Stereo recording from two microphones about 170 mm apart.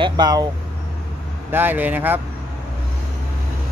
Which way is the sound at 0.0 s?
25° right (ahead or behind).